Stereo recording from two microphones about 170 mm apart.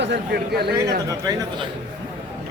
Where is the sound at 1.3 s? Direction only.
25° right (ahead or behind).